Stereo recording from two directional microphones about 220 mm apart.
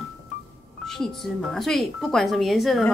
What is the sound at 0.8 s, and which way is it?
Speech, centre (ahead or behind).